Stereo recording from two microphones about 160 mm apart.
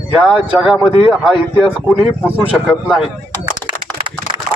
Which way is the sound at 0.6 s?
5° right (ahead or behind).